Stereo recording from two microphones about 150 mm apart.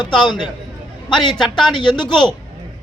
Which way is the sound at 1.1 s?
30° left (ahead or behind).